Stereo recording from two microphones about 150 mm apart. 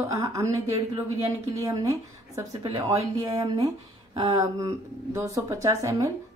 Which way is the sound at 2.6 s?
35° right (ahead or behind).